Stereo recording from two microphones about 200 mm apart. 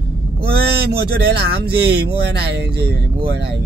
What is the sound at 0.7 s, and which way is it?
Speech, 55° right (ahead or behind).